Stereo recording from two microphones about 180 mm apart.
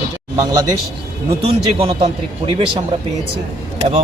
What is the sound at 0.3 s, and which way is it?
Speech, 20° right (ahead or behind).